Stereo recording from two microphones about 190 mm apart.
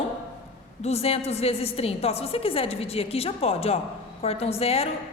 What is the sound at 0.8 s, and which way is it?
A woman's voice, 35° left (ahead or behind).